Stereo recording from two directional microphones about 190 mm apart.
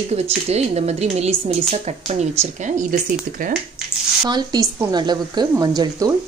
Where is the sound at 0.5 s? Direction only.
35° right (ahead or behind).